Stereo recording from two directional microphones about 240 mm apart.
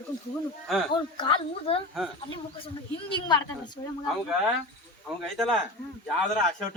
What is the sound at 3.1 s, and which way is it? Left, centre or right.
Speech, centre.